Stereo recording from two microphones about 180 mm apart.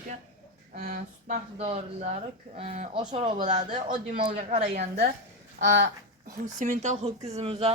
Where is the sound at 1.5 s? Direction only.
35° right (ahead or behind).